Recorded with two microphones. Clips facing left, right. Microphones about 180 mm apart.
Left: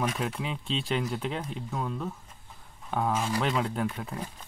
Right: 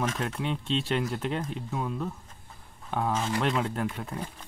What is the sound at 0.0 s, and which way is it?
Speech, 5° left (ahead or behind).